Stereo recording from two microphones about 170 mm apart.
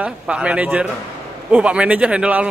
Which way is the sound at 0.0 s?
5° right (ahead or behind).